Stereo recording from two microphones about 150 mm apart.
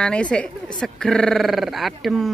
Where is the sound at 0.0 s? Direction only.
5° left (ahead or behind).